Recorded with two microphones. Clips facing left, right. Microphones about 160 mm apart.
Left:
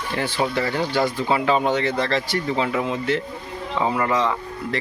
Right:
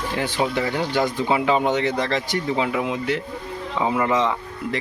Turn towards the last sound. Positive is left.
turn(degrees=-20)  # may be behind; listen again after turning